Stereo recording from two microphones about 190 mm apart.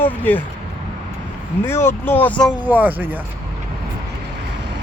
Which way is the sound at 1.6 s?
10° left (ahead or behind).